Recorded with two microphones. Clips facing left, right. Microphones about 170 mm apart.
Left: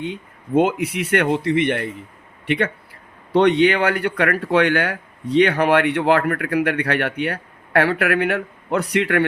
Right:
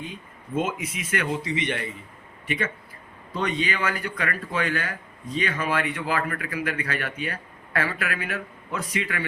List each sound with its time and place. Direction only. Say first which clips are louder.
0.0 s speech: left 9 dB; 70° left (ahead or behind)